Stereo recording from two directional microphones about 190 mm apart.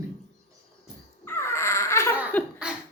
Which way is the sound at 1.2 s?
15° left (ahead or behind).